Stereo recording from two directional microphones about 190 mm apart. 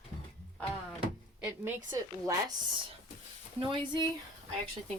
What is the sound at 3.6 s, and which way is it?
Speech, 25° right (ahead or behind).